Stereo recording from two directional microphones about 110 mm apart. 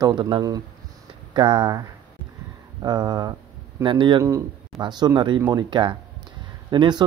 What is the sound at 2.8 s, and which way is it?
Speech, 40° right (ahead or behind).